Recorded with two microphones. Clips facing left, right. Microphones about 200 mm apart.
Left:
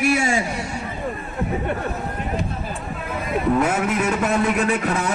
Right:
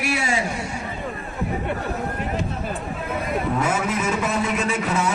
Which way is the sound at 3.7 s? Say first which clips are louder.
Left 2 dB; 60° left (ahead or behind).